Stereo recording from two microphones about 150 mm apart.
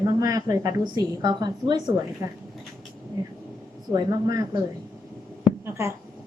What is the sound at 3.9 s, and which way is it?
Speech, 25° right (ahead or behind).